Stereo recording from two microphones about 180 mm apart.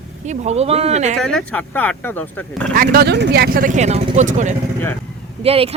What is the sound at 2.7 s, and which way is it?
A woman's voice, 55° right (ahead or behind).